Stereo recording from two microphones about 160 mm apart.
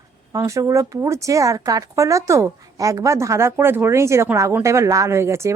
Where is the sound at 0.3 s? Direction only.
20° right (ahead or behind).